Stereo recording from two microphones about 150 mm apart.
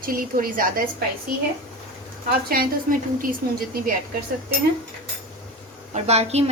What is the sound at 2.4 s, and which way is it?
A woman's voice, 85° right.